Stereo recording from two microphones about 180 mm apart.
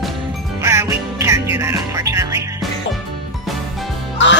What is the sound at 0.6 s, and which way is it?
Music, 15° right (ahead or behind).